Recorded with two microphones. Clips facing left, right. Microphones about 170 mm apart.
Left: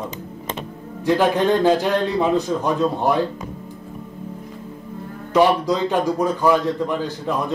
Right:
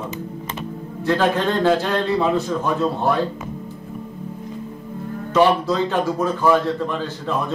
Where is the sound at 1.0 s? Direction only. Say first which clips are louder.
Left 2 dB; 15° left (ahead or behind).